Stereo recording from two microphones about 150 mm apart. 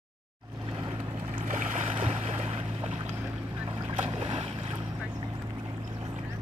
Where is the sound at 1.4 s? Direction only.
55° right (ahead or behind).